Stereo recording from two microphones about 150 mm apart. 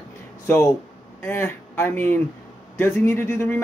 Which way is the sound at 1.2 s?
15° left (ahead or behind).